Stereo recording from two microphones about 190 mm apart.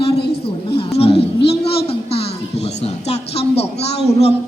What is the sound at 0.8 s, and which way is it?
A woman's voice, 30° left (ahead or behind).